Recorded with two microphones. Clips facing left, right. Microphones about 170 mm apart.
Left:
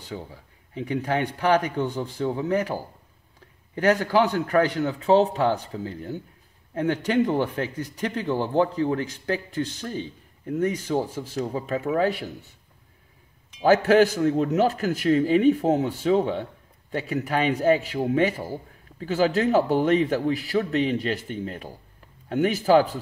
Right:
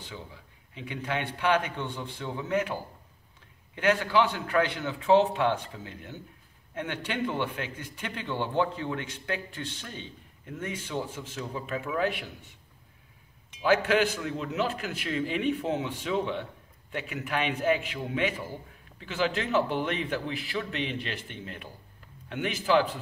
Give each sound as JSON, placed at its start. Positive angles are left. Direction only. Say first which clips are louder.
{"t": 0.0, "sound": "a man's voice", "louder": "left 7 dB", "side_deg": 40}
{"t": 13.6, "sound": "a man's voice", "louder": "left 7 dB", "side_deg": 40}